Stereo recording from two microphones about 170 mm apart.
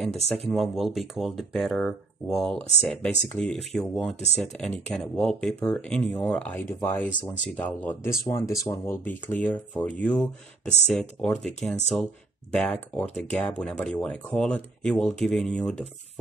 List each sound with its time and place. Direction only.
0.4 s speech: centre (ahead or behind)